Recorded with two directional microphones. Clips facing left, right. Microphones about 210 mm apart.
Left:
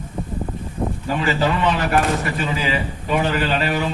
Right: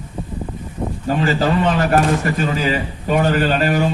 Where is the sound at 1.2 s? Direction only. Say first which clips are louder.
Right 3 dB; 40° right (ahead or behind).